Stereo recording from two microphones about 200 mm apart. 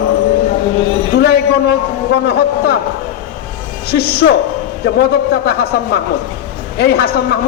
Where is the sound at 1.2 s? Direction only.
55° left (ahead or behind).